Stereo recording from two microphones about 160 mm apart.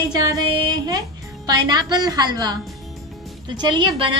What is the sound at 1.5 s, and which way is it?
A woman's voice, 25° right (ahead or behind).